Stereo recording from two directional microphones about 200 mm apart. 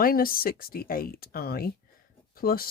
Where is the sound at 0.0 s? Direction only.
45° left (ahead or behind).